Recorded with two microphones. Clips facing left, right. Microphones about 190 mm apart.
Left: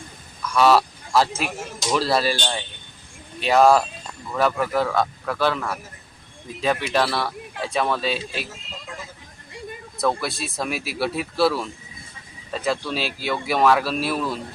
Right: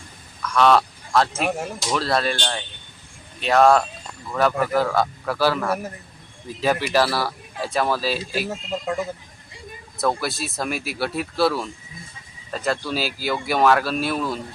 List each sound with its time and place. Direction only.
0.4 s quack: 5° left (ahead or behind)
1.9 s speech: 5° left (ahead or behind)
8.4 s a man's voice: 65° right (ahead or behind)
10.0 s speech: centre (ahead or behind)